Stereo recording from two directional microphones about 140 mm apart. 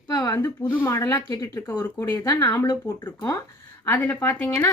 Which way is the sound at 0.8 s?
20° left (ahead or behind).